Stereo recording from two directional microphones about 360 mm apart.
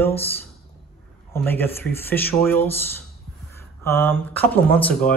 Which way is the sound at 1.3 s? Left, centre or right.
Centre.